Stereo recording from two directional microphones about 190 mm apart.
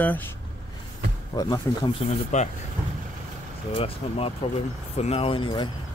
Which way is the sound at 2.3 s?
35° left (ahead or behind).